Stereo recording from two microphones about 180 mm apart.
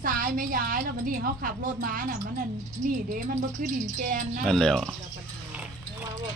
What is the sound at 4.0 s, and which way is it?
Speech, 45° right (ahead or behind).